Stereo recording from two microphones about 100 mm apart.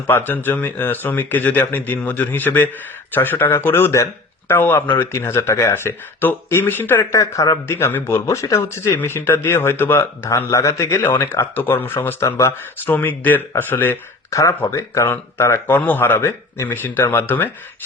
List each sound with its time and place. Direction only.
0.1 s speech: 20° left (ahead or behind)
7.1 s speech: 35° left (ahead or behind)
10.2 s a man's voice: 30° left (ahead or behind)
14.3 s speech: 30° left (ahead or behind)